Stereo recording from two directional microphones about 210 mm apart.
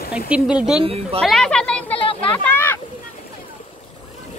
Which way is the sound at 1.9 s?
25° left (ahead or behind).